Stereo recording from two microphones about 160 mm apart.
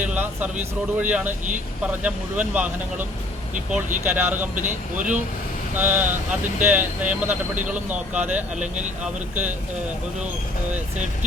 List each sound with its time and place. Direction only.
0.0 s a sound: 10° right (ahead or behind)
0.9 s speech: 10° right (ahead or behind)
4.5 s speech: 50° right (ahead or behind)
5.7 s speech: 10° right (ahead or behind)
8.6 s speech: 50° right (ahead or behind)
9.3 s speech: 10° right (ahead or behind)